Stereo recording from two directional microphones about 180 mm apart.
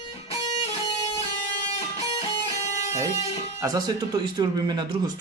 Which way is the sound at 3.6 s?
20° right (ahead or behind).